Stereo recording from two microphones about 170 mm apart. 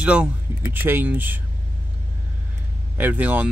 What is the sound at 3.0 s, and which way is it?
Speech, 10° right (ahead or behind).